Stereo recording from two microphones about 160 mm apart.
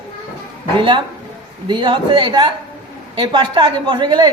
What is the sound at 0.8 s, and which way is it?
A man's voice, 30° right (ahead or behind).